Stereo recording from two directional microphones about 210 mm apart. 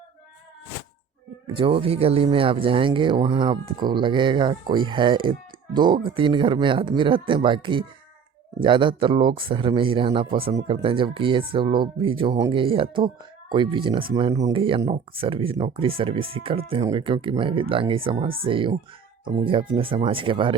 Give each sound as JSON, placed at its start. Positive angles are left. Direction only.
{"t": 1.5, "sound": "speech", "side_deg": -25}